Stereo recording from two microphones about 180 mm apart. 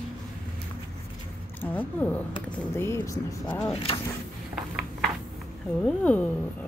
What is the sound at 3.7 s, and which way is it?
Speech, 30° left (ahead or behind).